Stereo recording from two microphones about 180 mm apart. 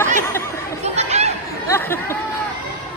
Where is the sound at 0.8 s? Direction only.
35° right (ahead or behind).